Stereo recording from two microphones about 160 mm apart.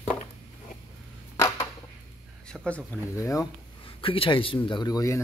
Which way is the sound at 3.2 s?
20° left (ahead or behind).